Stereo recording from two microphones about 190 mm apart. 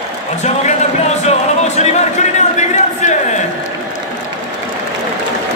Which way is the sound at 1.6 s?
35° left (ahead or behind).